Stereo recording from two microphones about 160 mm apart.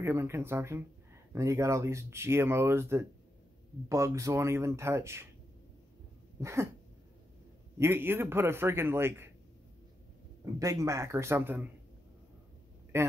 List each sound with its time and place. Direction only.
0.0 s speech: 15° right (ahead or behind)
6.4 s speech: 15° right (ahead or behind)
7.8 s speech: 15° right (ahead or behind)
10.4 s speech: 20° right (ahead or behind)
12.9 s a man's voice: 15° right (ahead or behind)